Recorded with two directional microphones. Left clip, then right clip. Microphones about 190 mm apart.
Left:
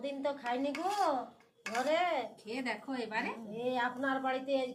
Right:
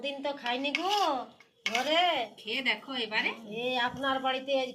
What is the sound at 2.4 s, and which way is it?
Speech, centre (ahead or behind).